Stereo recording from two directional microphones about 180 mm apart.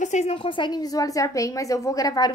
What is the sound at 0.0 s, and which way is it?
A woman's voice, 40° left (ahead or behind).